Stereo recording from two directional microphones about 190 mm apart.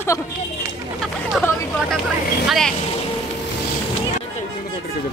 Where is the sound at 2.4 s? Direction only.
Centre (ahead or behind).